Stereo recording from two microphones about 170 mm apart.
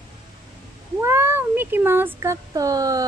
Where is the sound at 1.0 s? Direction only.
15° right (ahead or behind).